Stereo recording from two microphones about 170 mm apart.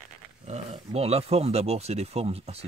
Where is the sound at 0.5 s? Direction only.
40° right (ahead or behind).